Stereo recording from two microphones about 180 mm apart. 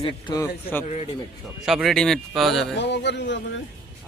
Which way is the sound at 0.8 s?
35° left (ahead or behind).